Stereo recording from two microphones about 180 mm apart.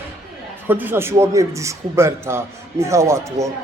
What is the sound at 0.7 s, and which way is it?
Speech, 10° right (ahead or behind).